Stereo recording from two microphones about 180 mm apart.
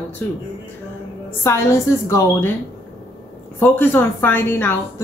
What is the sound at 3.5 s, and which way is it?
Speech, 10° left (ahead or behind).